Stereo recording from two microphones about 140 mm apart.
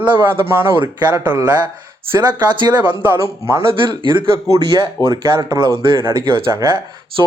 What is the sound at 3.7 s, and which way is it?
Speech, 35° right (ahead or behind).